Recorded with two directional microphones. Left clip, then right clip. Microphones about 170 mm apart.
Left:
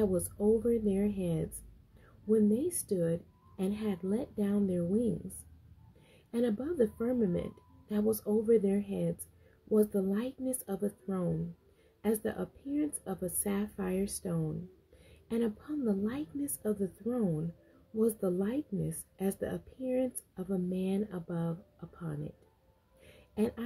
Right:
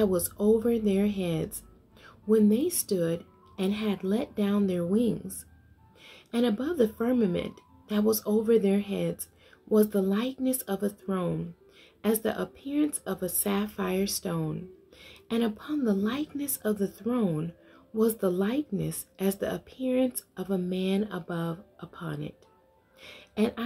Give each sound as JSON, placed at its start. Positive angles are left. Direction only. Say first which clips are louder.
{"t": 0.7, "sound": "speech", "louder": "right 4 dB", "side_deg": 40}
{"t": 6.3, "sound": "speech", "louder": "right 5 dB", "side_deg": 40}
{"t": 23.3, "sound": "a sound", "louder": "right 5 dB", "side_deg": 40}